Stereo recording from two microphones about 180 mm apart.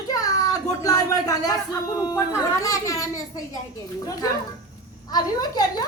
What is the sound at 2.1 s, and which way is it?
A child's voice, 15° left (ahead or behind).